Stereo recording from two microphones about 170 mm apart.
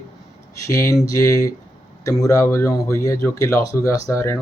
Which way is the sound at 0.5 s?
20° left (ahead or behind).